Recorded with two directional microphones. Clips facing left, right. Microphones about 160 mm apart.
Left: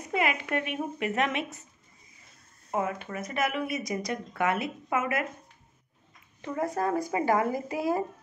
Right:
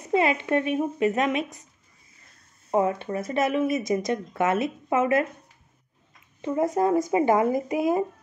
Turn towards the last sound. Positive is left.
turn(degrees=-20)  # may be behind; listen again after turning